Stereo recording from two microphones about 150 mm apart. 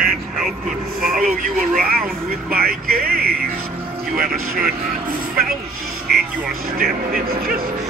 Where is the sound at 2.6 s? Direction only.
80° right.